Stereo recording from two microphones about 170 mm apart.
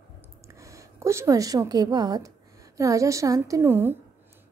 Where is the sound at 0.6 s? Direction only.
20° right (ahead or behind).